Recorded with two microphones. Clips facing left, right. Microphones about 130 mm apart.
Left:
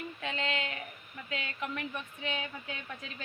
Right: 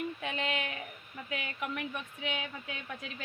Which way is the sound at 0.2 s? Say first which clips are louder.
Even; 15° right (ahead or behind).